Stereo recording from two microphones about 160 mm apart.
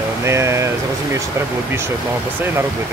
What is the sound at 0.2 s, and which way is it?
Speech, 15° right (ahead or behind).